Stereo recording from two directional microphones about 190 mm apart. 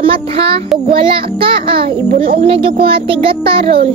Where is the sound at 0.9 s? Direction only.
30° right (ahead or behind).